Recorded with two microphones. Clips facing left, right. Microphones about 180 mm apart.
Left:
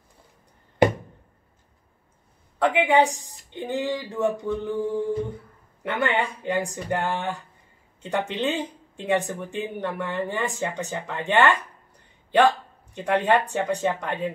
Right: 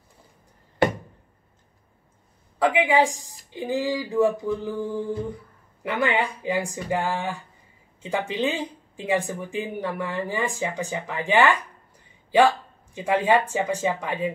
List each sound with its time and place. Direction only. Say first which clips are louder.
0.8 s a sound: left 2 dB; 20° left (ahead or behind)
2.6 s speech: even; centre (ahead or behind)
5.8 s speech: right 1 dB; centre (ahead or behind)